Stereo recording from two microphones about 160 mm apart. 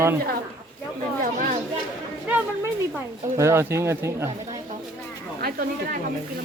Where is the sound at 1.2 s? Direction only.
60° right (ahead or behind).